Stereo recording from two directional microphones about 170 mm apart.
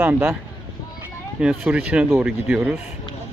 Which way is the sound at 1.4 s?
5° right (ahead or behind).